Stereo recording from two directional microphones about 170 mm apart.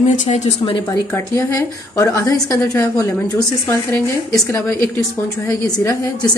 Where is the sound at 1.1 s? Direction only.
15° left (ahead or behind).